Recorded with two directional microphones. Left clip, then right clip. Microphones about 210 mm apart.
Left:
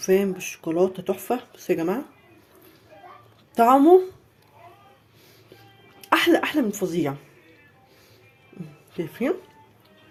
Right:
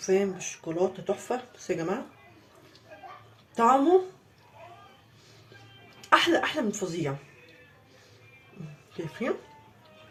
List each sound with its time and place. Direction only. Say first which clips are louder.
0.0 s speech: left 5 dB; 45° left (ahead or behind)
3.5 s speech: left 6 dB; 45° left (ahead or behind)
6.0 s a woman's voice: left 3 dB; 45° left (ahead or behind)
9.0 s speech: left 6 dB; 45° left (ahead or behind)